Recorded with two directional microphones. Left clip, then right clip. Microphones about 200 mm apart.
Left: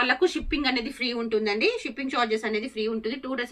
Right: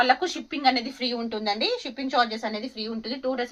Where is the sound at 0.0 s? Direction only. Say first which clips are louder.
Right 1 dB; 15° right (ahead or behind).